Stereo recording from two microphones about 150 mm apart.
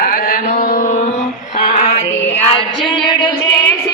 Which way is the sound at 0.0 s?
70° left (ahead or behind).